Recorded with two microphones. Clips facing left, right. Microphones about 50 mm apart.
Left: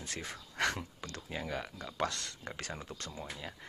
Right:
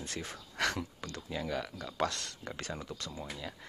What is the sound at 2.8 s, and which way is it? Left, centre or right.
Speech, left.